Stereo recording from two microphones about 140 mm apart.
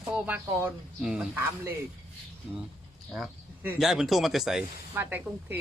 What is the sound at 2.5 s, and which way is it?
A man's voice, 5° right (ahead or behind).